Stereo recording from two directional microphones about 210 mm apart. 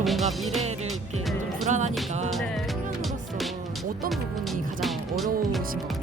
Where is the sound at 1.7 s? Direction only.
35° right (ahead or behind).